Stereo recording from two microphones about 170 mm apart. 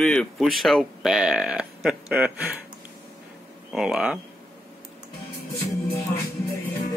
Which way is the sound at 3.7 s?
5° right (ahead or behind).